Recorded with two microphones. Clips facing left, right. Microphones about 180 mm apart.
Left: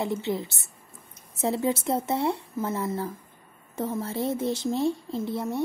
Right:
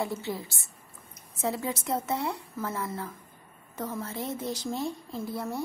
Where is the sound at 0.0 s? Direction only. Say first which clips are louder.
Left 4 dB; 20° left (ahead or behind).